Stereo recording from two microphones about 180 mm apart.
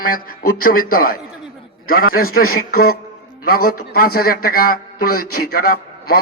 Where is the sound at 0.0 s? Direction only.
55° left (ahead or behind).